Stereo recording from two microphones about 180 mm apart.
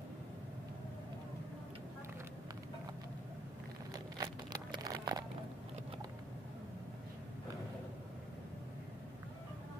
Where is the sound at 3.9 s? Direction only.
20° right (ahead or behind).